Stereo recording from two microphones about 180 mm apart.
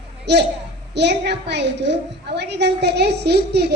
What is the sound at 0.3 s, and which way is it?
A woman's voice, 70° right (ahead or behind).